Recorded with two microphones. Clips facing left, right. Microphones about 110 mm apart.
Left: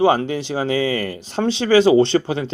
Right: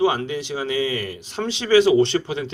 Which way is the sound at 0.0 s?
35° left (ahead or behind).